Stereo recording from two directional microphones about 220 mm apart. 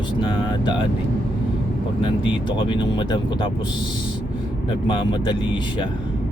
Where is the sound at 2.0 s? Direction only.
20° left (ahead or behind).